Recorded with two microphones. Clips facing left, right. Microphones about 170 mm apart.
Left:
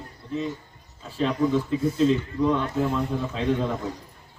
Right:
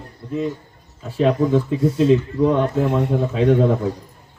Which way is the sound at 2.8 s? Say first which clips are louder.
Right 6 dB; 70° right (ahead or behind).